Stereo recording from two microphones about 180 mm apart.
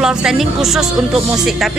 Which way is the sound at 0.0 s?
5° right (ahead or behind).